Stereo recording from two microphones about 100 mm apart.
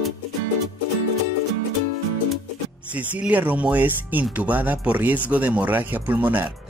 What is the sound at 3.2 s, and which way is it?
Speech, 15° right (ahead or behind).